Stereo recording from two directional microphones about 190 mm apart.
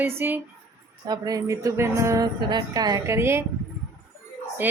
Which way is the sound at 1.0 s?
20° right (ahead or behind).